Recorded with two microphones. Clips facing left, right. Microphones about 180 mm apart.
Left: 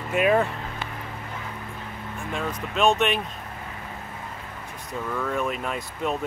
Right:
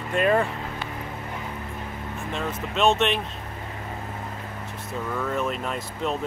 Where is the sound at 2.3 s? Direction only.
Centre (ahead or behind).